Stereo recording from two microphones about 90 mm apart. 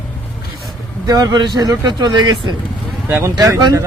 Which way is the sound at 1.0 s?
45° right (ahead or behind).